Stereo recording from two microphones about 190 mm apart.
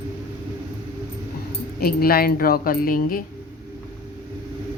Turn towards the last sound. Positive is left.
turn(degrees=50)  # may be behind; listen again after turning